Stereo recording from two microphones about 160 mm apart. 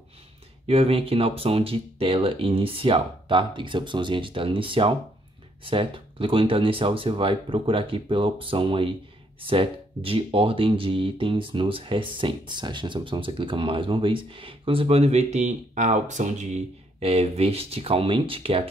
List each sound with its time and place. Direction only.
0.7 s speech: 35° right (ahead or behind)